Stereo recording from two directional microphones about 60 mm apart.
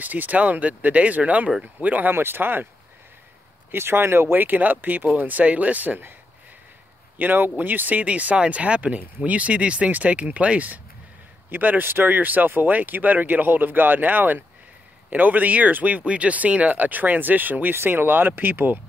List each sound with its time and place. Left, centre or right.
0.0 s speech: right
2.1 s speech: right
3.7 s speech: right
7.2 s speech: right